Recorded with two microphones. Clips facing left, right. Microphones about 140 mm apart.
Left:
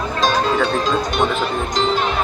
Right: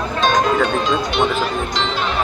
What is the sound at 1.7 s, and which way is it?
Speech, 45° left (ahead or behind).